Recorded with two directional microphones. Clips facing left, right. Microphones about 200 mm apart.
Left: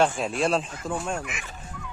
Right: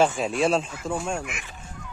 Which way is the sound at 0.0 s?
Centre (ahead or behind).